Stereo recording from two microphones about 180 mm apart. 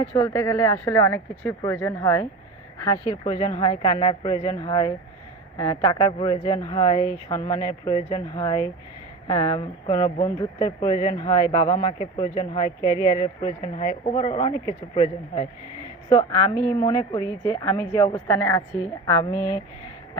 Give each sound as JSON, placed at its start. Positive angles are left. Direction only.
{"t": 0.0, "sound": "a man's voice", "side_deg": 25}